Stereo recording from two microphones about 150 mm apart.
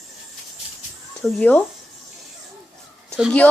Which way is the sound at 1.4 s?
10° left (ahead or behind).